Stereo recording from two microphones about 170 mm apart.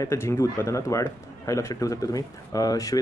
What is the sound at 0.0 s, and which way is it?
Speech, 15° left (ahead or behind).